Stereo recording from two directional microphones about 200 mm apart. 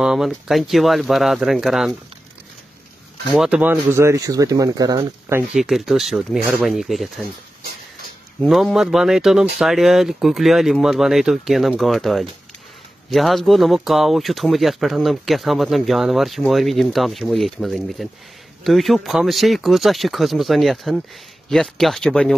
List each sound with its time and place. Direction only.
0.0 s speech: centre (ahead or behind)
3.3 s speech: 5° right (ahead or behind)
5.5 s speech: centre (ahead or behind)
8.4 s speech: centre (ahead or behind)